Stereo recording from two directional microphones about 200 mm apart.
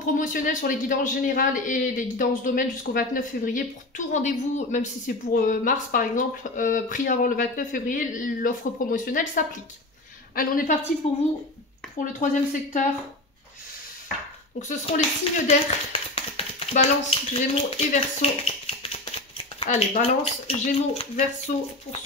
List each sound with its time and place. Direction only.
0.0 s a man's voice: 40° left (ahead or behind)
12.0 s a man's voice: 40° left (ahead or behind)
14.6 s speech: 35° left (ahead or behind)
21.5 s a man's voice: 40° left (ahead or behind)